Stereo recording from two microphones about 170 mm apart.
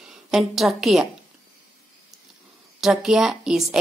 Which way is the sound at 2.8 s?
5° right (ahead or behind).